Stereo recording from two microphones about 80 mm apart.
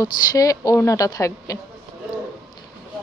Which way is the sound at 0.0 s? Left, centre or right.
Left.